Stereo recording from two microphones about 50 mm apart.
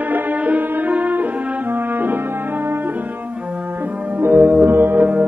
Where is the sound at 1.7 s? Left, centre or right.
Right.